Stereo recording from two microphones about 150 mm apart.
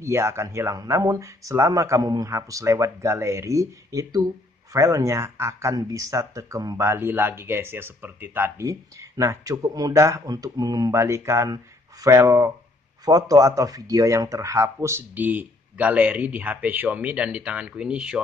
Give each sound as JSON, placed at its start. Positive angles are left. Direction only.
{"t": 0.0, "sound": "speech", "side_deg": -15}